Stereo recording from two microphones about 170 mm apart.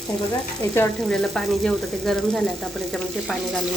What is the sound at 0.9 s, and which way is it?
Speech, centre (ahead or behind).